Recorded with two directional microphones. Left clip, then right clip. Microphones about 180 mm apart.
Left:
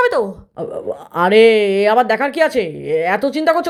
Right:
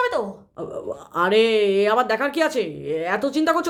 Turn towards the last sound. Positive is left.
turn(degrees=20)  # may be behind; listen again after turning